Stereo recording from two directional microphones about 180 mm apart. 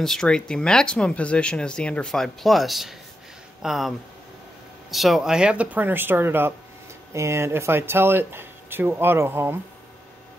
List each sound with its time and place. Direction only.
0.0 s speech: 5° left (ahead or behind)
4.9 s speech: centre (ahead or behind)